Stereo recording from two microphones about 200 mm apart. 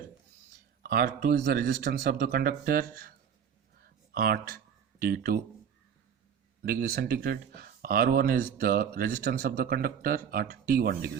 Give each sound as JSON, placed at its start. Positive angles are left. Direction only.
{"t": 0.8, "sound": "speech", "side_deg": -45}
{"t": 6.6, "sound": "speech", "side_deg": -50}